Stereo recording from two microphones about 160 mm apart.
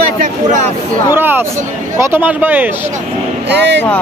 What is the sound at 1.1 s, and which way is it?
Speech, 15° right (ahead or behind).